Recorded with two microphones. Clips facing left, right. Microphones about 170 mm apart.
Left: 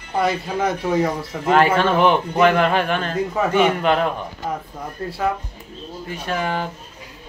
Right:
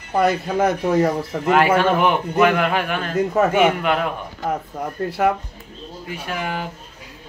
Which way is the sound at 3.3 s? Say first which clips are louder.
Right 1 dB; 50° right (ahead or behind).